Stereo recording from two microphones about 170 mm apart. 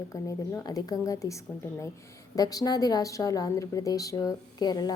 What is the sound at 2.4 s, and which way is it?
A woman's voice, 20° left (ahead or behind).